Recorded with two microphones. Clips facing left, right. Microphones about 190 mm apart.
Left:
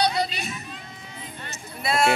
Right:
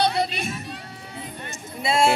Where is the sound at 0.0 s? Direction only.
50° right (ahead or behind).